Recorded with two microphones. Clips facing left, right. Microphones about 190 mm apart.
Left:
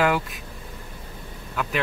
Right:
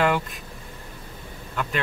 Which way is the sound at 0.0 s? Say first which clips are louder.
Even; 5° left (ahead or behind).